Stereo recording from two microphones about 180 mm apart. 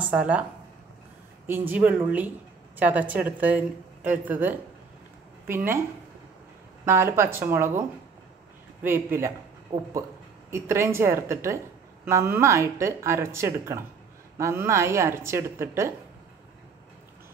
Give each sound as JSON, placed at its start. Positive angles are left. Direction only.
{"t": 0.0, "sound": "a woman's voice", "side_deg": -5}
{"t": 1.7, "sound": "a woman's voice", "side_deg": -10}
{"t": 8.8, "sound": "a woman's voice", "side_deg": -10}
{"t": 9.7, "sound": "speech", "side_deg": -30}
{"t": 10.5, "sound": "a woman's voice", "side_deg": -15}